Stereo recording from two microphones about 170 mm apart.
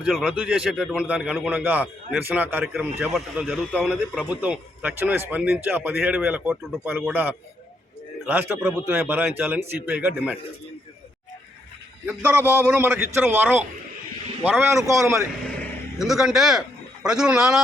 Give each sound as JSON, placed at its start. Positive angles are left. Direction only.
{"t": 0.0, "sound": "speech", "side_deg": -5}
{"t": 12.0, "sound": "speech", "side_deg": -10}
{"t": 14.7, "sound": "speech", "side_deg": -15}
{"t": 16.0, "sound": "a man's voice", "side_deg": 0}